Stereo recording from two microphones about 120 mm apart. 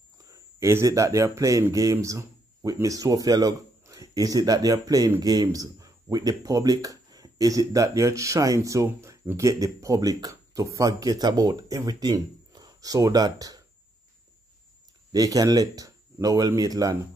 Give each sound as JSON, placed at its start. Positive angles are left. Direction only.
{"t": 0.2, "sound": "speech", "side_deg": -25}
{"t": 15.1, "sound": "speech", "side_deg": -30}